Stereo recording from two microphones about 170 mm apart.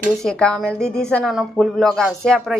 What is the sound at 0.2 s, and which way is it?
A woman's voice, 5° left (ahead or behind).